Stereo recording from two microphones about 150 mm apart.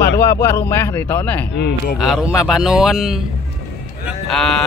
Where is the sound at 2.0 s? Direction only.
Centre (ahead or behind).